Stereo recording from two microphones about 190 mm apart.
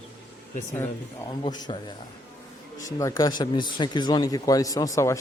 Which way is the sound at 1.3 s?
20° left (ahead or behind).